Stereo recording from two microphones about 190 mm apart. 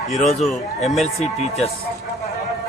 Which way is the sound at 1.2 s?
35° left (ahead or behind).